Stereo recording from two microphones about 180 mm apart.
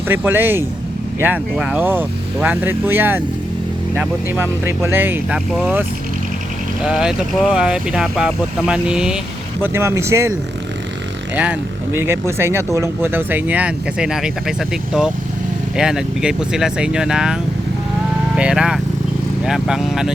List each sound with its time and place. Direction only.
0.1 s speech: 10° right (ahead or behind)
6.8 s speech: 5° right (ahead or behind)
11.9 s speech: 15° right (ahead or behind)